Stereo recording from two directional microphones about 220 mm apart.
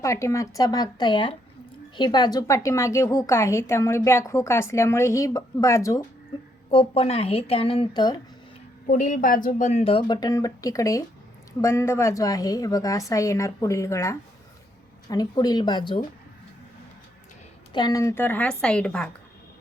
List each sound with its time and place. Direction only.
0.0 s a woman's voice: 15° left (ahead or behind)
6.7 s speech: 25° left (ahead or behind)
8.9 s a woman's voice: 35° left (ahead or behind)
17.7 s a woman's voice: 15° left (ahead or behind)